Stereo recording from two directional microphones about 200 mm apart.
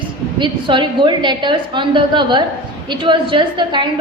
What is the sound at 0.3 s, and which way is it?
A woman's voice, 25° right (ahead or behind).